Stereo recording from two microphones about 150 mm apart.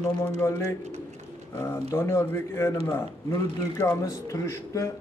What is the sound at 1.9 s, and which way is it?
A man's voice, 15° left (ahead or behind).